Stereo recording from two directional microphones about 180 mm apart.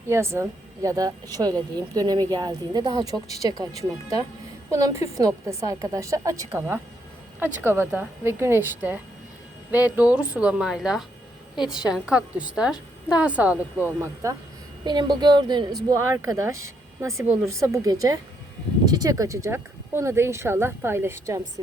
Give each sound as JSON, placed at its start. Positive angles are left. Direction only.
{"t": 0.1, "sound": "a woman's voice", "side_deg": -15}
{"t": 4.7, "sound": "a woman's voice", "side_deg": -15}